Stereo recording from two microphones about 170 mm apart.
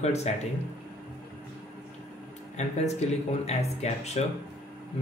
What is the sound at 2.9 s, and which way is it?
Speech, 40° left (ahead or behind).